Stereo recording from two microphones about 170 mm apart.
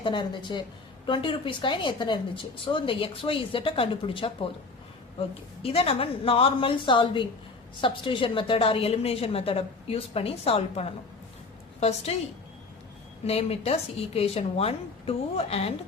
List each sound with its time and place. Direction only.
0.0 s a woman's voice: 30° left (ahead or behind)
5.6 s a woman's voice: 35° left (ahead or behind)
13.2 s a woman's voice: 35° left (ahead or behind)